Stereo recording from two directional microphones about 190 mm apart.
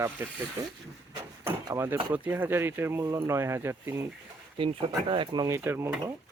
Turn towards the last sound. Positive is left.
turn(degrees=-10)  # may be behind; listen again after turning